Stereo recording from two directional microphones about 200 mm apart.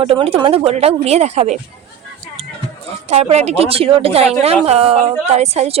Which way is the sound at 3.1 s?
30° right (ahead or behind).